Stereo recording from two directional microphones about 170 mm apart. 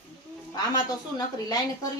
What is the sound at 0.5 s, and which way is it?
A woman's voice, 25° left (ahead or behind).